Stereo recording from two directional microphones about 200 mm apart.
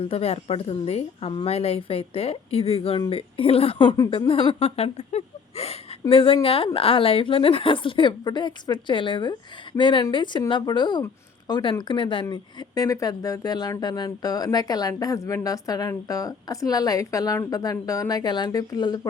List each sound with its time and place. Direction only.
0.0 s a woman's voice: 30° left (ahead or behind)